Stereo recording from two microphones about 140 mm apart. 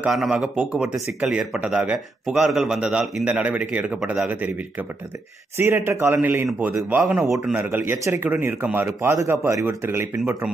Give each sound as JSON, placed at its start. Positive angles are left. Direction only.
{"t": 0.0, "sound": "a man's voice", "side_deg": -5}
{"t": 7.1, "sound": "a man's voice", "side_deg": -5}